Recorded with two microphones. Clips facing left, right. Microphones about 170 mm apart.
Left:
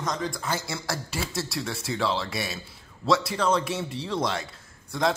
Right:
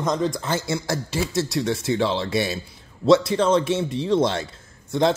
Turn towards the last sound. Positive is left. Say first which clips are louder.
# right 6 dB
turn(degrees=-25)  # may be behind; listen again after turning